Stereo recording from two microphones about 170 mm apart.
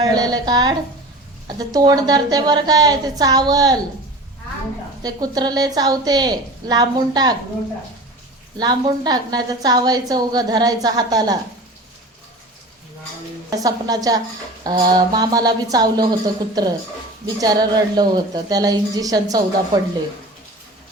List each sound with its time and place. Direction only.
0.0 s a woman's voice: 20° right (ahead or behind)
5.0 s a woman's voice: 20° right (ahead or behind)
8.5 s a woman's voice: 25° right (ahead or behind)
13.6 s a woman's voice: 20° right (ahead or behind)